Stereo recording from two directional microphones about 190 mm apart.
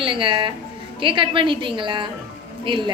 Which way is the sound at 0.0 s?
25° right (ahead or behind).